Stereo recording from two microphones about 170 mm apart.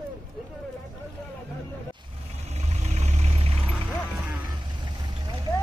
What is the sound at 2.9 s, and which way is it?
Vehicle, 40° right (ahead or behind).